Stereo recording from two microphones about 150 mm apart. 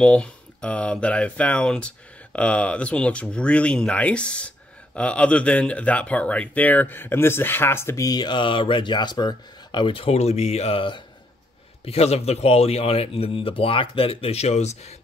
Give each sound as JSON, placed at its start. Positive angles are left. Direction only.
{"t": 0.0, "sound": "speech", "side_deg": 5}